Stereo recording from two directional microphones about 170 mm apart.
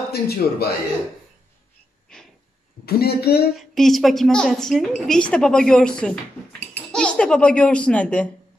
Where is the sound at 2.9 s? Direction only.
65° left (ahead or behind).